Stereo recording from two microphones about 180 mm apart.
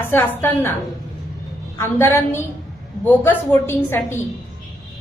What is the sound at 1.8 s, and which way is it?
A woman's voice, 15° left (ahead or behind).